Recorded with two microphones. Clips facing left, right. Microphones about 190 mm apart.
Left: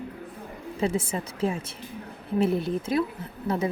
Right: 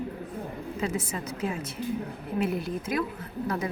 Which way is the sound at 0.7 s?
30° left (ahead or behind).